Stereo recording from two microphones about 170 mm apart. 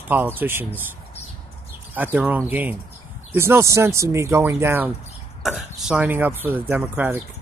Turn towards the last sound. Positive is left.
turn(degrees=-10)  # may be behind; listen again after turning